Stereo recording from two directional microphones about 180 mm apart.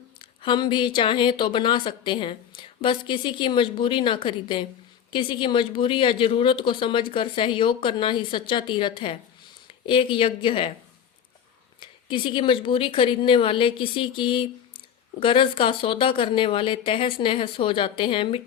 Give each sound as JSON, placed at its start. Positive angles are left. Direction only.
{"t": 0.2, "sound": "speech", "side_deg": 25}
{"t": 11.8, "sound": "speech", "side_deg": 30}